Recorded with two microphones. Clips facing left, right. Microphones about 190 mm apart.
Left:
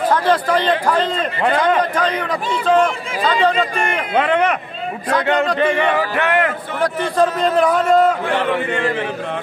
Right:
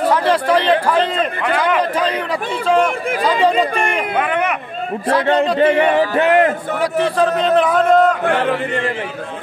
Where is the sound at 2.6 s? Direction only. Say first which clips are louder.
Even; 10° right (ahead or behind).